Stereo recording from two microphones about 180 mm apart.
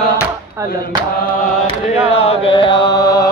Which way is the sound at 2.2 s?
35° left (ahead or behind).